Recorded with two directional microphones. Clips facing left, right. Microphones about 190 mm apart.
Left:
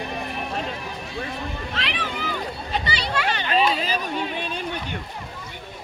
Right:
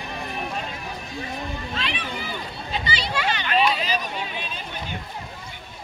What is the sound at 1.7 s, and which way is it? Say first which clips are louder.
Vehicle: left 1 dB; 90° left.